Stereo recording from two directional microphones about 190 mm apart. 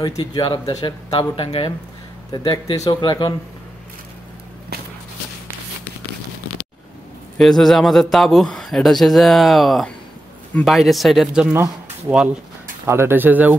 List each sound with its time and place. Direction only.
0.2 s speech: 20° left (ahead or behind)
7.3 s speech: centre (ahead or behind)
12.8 s speech: 15° right (ahead or behind)